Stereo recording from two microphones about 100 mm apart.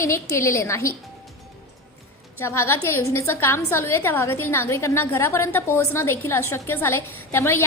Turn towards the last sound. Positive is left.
turn(degrees=25)  # may be behind; listen again after turning